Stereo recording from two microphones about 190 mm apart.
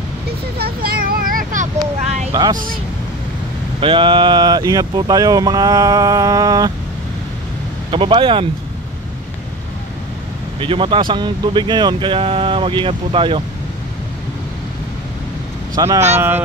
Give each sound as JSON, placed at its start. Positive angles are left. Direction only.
{"t": 0.6, "sound": "vehicle", "side_deg": -55}
{"t": 2.5, "sound": "speech", "side_deg": -45}
{"t": 3.8, "sound": "speech", "side_deg": -25}
{"t": 7.9, "sound": "speech", "side_deg": -25}
{"t": 10.6, "sound": "speech", "side_deg": -25}
{"t": 15.7, "sound": "speech", "side_deg": -15}